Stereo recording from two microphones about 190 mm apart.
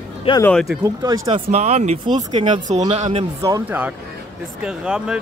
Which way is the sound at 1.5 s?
35° right (ahead or behind).